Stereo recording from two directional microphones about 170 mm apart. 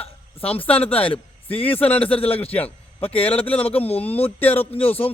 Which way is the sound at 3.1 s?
10° left (ahead or behind).